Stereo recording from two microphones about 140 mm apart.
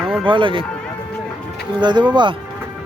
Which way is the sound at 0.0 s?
Centre (ahead or behind).